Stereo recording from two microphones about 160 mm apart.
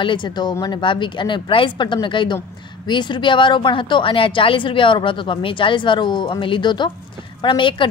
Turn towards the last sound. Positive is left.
turn(degrees=30)  # may be behind; listen again after turning